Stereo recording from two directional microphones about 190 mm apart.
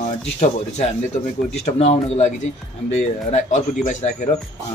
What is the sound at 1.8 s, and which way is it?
Speech, 35° left (ahead or behind).